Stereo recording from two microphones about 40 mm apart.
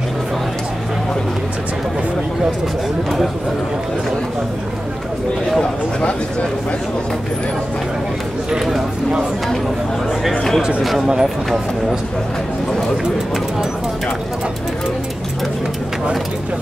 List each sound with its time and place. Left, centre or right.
10.8 s speech: centre
11.1 s speech: centre